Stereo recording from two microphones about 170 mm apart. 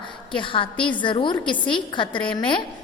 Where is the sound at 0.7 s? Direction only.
10° left (ahead or behind).